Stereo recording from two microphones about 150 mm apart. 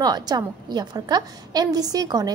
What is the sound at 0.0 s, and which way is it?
A woman's voice, 25° right (ahead or behind).